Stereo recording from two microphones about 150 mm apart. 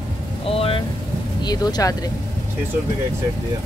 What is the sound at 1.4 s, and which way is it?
Speech, 25° left (ahead or behind).